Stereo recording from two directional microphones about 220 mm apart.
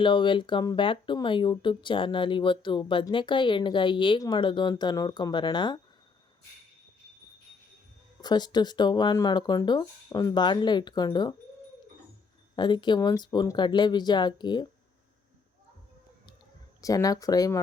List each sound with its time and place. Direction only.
0.0 s speech: 20° left (ahead or behind)
8.2 s speech: 20° left (ahead or behind)
12.5 s speech: 20° left (ahead or behind)
16.8 s speech: 15° left (ahead or behind)